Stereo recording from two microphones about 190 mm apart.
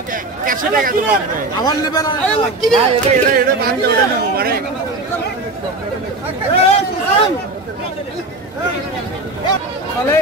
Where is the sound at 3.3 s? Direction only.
55° right (ahead or behind).